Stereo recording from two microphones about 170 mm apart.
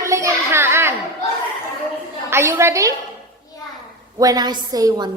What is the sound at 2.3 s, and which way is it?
Speech, 15° right (ahead or behind).